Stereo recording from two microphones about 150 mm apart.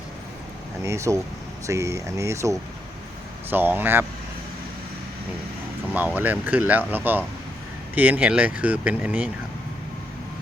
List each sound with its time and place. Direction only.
0.9 s speech: 20° right (ahead or behind)
5.9 s speech: 10° right (ahead or behind)